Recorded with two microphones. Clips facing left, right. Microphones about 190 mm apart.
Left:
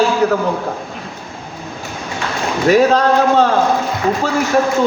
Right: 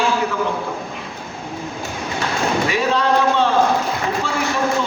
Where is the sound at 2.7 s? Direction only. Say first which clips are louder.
Left 11 dB; 45° left (ahead or behind).